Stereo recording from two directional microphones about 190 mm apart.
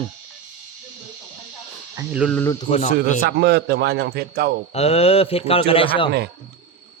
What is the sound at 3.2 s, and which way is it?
A man's voice, 60° right (ahead or behind).